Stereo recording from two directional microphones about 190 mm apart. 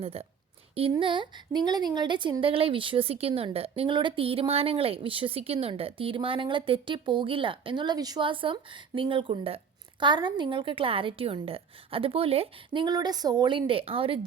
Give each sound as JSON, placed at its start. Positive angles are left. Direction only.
{"t": 0.0, "sound": "a woman's voice", "side_deg": -30}